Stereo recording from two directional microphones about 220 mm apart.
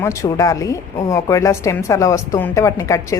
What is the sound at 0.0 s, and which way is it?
Speech, 15° left (ahead or behind).